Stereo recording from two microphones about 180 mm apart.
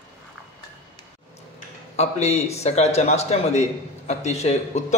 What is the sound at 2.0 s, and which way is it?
A man's voice, 35° left (ahead or behind).